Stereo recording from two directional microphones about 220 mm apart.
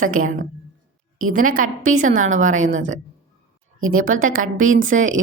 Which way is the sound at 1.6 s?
75° right (ahead or behind).